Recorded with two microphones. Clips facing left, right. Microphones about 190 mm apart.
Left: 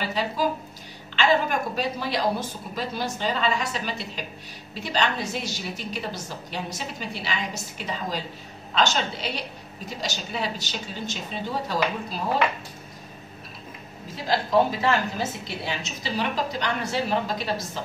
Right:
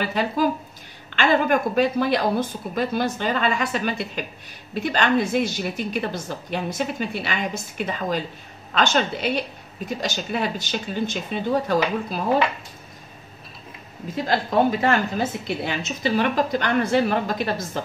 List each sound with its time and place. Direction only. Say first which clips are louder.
0.0 s a woman's voice: right 4 dB; 55° right (ahead or behind)
14.1 s a woman's voice: right 1 dB; 55° right (ahead or behind)